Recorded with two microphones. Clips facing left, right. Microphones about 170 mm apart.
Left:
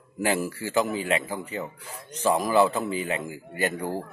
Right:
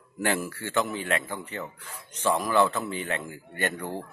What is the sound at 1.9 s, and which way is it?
Speech, 35° left (ahead or behind).